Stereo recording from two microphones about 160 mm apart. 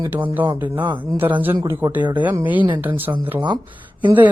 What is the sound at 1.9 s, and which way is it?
Speech, 10° right (ahead or behind).